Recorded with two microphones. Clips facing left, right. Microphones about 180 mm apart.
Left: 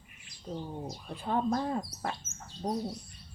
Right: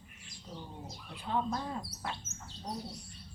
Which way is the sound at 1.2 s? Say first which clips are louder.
Left 5 dB; 50° left (ahead or behind).